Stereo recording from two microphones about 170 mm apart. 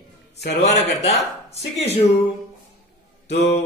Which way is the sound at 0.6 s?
40° left (ahead or behind).